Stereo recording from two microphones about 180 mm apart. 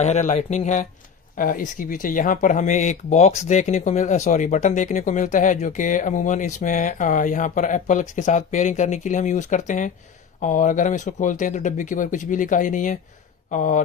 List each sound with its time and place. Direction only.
0.0 s speech: 40° left (ahead or behind)